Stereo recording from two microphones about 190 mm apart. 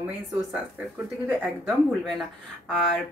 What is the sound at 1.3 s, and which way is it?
Speech, 5° right (ahead or behind).